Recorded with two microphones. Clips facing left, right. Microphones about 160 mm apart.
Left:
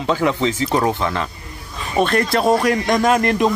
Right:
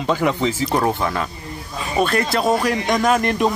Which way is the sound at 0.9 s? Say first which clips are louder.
Even; 10° right (ahead or behind).